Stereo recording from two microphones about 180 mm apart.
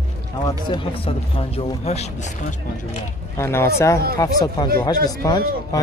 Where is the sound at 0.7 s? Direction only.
30° left (ahead or behind).